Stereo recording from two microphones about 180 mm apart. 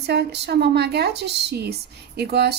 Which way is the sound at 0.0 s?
70° right (ahead or behind).